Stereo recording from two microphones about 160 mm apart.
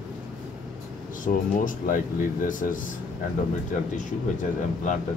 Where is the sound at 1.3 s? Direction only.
50° left (ahead or behind).